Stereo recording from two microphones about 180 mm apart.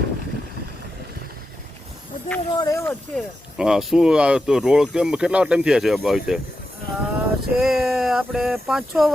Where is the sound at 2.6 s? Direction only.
15° left (ahead or behind).